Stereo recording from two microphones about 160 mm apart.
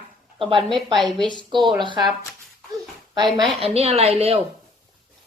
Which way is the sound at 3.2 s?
25° right (ahead or behind).